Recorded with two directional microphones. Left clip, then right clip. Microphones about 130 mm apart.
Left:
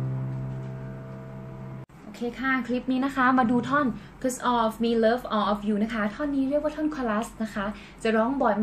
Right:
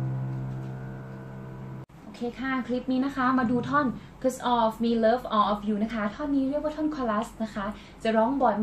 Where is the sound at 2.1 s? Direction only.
45° left (ahead or behind); by 3.8 s 65° left (ahead or behind).